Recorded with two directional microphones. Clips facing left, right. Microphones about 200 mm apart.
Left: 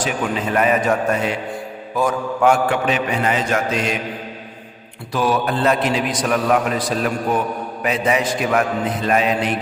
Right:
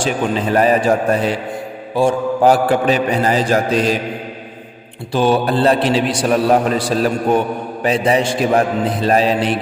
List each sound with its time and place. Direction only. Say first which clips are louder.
0.0 s a man's voice: right 4 dB; 30° right (ahead or behind)
5.1 s a man's voice: right 5 dB; 30° right (ahead or behind)